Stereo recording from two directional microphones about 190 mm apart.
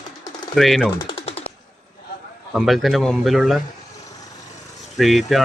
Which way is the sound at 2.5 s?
Centre (ahead or behind).